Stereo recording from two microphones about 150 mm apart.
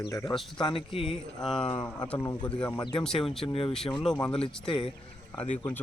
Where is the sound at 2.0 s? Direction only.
10° left (ahead or behind).